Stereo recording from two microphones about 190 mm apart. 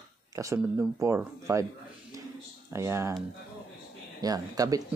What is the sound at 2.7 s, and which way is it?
Speech, 15° right (ahead or behind).